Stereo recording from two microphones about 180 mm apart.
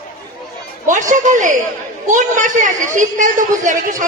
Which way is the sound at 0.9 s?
45° right (ahead or behind).